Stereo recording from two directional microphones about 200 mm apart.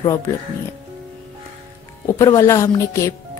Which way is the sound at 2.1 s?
15° left (ahead or behind).